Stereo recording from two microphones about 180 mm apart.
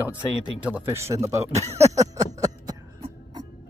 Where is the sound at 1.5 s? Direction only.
35° right (ahead or behind).